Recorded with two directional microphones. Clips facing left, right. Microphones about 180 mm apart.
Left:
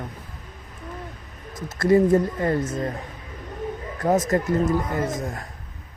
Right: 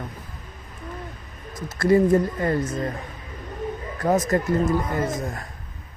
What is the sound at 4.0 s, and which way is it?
Speech, 20° left (ahead or behind).